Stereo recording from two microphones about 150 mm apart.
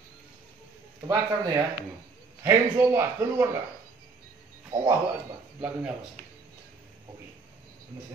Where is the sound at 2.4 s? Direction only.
15° right (ahead or behind).